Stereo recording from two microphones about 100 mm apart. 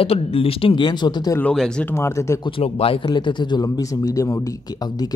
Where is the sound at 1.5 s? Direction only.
5° left (ahead or behind).